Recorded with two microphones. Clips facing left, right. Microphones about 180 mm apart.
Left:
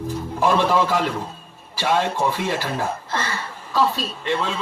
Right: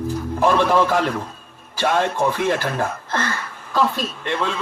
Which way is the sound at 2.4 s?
55° right (ahead or behind).